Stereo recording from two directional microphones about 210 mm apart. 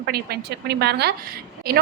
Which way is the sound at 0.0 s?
50° right (ahead or behind).